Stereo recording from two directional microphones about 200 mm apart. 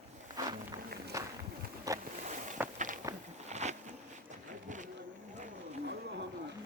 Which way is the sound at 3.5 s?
35° right (ahead or behind).